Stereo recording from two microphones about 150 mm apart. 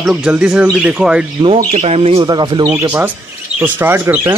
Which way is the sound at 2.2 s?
30° right (ahead or behind).